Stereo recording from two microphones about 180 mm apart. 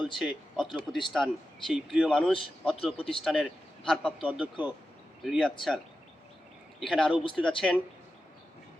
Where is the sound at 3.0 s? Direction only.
30° left (ahead or behind).